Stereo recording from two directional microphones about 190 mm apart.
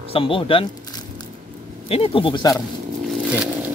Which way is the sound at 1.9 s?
30° left (ahead or behind).